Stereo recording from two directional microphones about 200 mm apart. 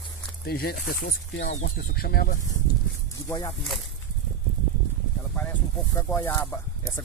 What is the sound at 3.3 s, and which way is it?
Speech, 15° left (ahead or behind).